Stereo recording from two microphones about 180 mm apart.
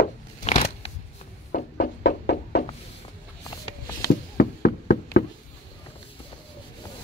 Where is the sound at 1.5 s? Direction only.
65° left (ahead or behind).